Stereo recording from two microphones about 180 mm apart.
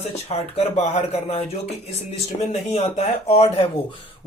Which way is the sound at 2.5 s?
35° left (ahead or behind).